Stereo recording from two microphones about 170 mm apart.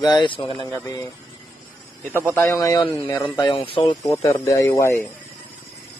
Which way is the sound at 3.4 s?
25° left (ahead or behind).